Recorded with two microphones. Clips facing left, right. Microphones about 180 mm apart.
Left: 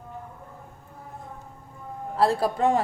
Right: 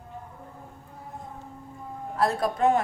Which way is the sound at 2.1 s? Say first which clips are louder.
Left 2 dB; 30° left (ahead or behind).